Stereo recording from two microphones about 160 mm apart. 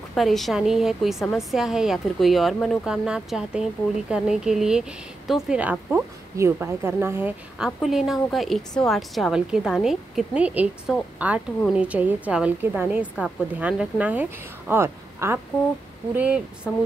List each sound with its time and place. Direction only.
0.1 s a woman's voice: centre (ahead or behind)